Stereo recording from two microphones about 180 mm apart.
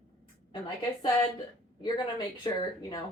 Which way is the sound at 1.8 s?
25° left (ahead or behind).